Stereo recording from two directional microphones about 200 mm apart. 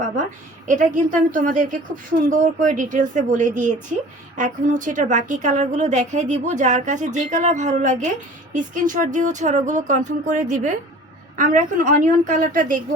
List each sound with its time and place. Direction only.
0.7 s a woman's voice: 40° right (ahead or behind)